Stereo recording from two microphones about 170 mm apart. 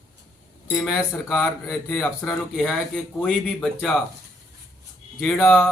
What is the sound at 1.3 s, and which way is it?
Speech, centre (ahead or behind).